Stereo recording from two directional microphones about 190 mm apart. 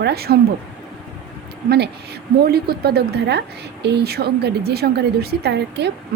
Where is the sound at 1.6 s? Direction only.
60° right (ahead or behind).